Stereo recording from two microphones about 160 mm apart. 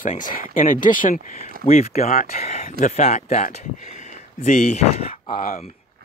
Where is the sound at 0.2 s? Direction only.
60° left (ahead or behind).